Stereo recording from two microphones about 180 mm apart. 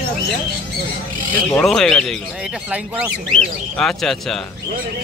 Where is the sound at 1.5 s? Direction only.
5° left (ahead or behind).